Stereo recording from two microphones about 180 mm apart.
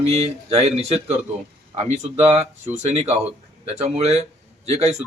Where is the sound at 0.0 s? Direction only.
35° right (ahead or behind).